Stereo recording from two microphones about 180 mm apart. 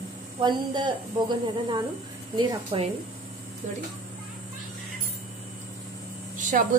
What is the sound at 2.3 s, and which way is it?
Speech, 25° right (ahead or behind).